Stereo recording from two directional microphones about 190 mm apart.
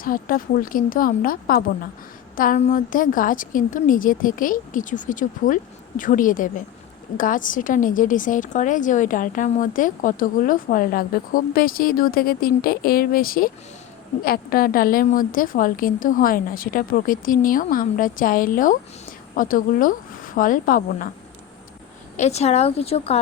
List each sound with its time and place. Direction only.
0.0 s a woman's voice: 45° left (ahead or behind)
22.2 s a woman's voice: 35° left (ahead or behind)